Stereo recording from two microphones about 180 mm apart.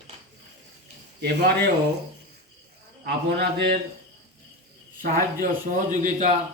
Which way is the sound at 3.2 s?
65° right (ahead or behind).